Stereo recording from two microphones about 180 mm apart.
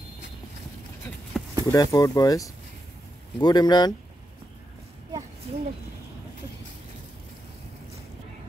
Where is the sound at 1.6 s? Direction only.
20° left (ahead or behind).